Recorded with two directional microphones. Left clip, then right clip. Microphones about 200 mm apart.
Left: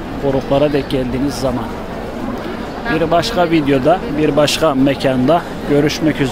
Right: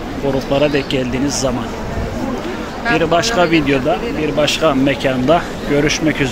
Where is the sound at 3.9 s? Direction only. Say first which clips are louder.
Left 3 dB; 30° left (ahead or behind).